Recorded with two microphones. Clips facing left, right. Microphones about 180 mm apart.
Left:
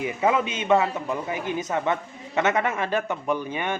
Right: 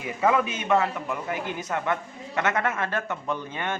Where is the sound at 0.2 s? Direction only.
20° left (ahead or behind).